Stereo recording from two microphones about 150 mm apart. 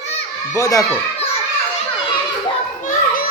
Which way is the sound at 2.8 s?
65° left (ahead or behind).